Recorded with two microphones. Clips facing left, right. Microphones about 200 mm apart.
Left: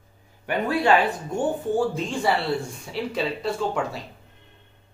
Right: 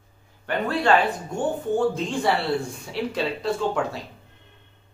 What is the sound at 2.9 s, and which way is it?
Speech, centre (ahead or behind).